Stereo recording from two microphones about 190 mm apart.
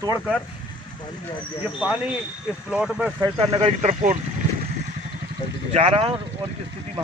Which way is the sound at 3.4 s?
30° right (ahead or behind).